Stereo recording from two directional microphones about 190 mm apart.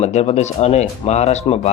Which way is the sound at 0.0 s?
35° left (ahead or behind).